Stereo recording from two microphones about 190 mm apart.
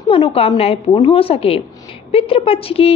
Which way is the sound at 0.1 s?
30° left (ahead or behind).